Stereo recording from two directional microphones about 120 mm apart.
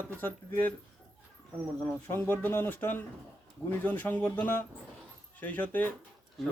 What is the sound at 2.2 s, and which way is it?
Speech, 15° left (ahead or behind).